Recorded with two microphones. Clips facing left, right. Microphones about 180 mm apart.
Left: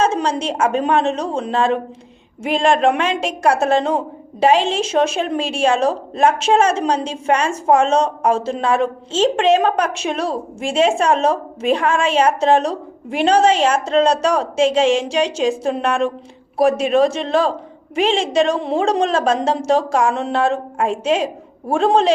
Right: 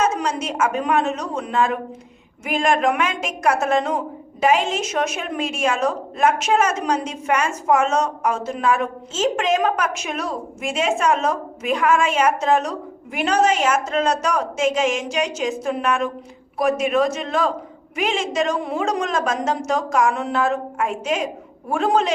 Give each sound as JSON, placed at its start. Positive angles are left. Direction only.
{"t": 0.0, "sound": "a woman's voice", "side_deg": 30}